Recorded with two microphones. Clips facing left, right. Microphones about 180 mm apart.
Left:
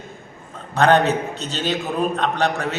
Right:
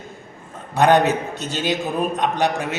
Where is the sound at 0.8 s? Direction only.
15° right (ahead or behind).